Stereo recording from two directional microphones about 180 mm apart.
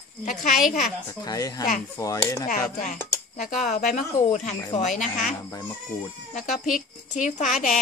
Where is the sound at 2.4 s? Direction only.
45° left (ahead or behind).